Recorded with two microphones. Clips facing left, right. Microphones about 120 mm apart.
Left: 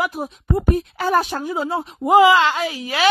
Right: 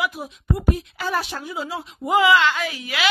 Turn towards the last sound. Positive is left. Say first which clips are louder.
# left 5 dB
turn(degrees=35)  # may be behind; listen again after turning